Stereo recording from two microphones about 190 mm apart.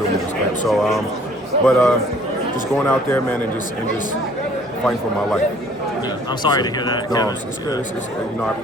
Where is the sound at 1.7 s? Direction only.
5° left (ahead or behind).